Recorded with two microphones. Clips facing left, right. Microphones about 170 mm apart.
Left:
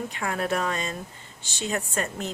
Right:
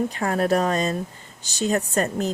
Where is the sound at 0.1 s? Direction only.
40° right (ahead or behind).